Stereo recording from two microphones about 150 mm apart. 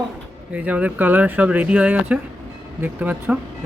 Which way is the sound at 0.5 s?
10° right (ahead or behind).